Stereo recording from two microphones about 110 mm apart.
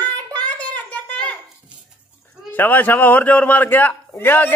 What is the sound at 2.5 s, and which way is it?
A man's voice, 15° left (ahead or behind).